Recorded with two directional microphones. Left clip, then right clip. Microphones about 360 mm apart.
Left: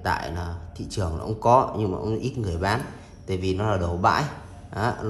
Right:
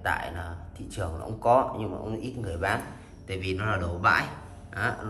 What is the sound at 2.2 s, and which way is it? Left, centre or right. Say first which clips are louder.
Speech: right 1 dB; centre.